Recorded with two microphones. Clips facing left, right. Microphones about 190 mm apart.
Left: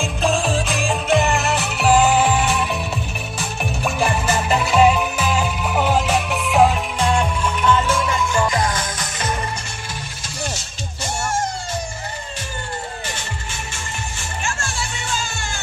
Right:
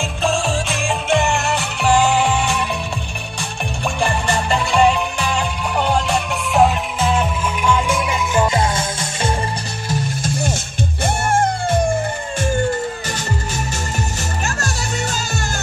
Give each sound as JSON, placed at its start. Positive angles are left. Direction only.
{"t": 0.0, "sound": "music", "side_deg": 0}
{"t": 11.1, "sound": "music", "side_deg": -55}
{"t": 14.4, "sound": "music", "side_deg": -40}